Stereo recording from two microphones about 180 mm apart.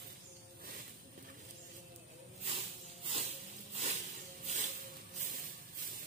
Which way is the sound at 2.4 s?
30° right (ahead or behind).